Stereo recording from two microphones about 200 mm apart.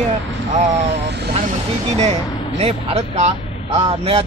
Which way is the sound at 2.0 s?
30° right (ahead or behind).